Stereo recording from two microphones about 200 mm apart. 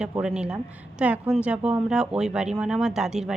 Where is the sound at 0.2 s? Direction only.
5° right (ahead or behind).